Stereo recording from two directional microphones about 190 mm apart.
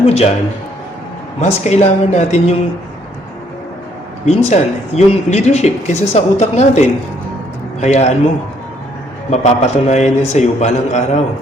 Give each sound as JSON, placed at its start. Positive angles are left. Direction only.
{"t": 0.0, "sound": "a man's voice", "side_deg": 35}
{"t": 1.4, "sound": "speech", "side_deg": 35}
{"t": 4.3, "sound": "speech", "side_deg": 35}
{"t": 9.3, "sound": "speech", "side_deg": 35}